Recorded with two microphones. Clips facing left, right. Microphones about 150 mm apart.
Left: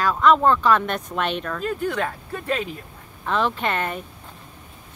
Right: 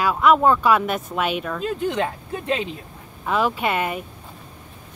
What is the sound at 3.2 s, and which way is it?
Speech, 10° right (ahead or behind).